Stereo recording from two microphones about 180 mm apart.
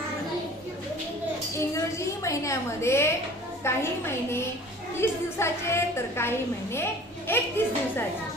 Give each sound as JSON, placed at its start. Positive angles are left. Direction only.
{"t": 1.5, "sound": "a woman's voice", "side_deg": 15}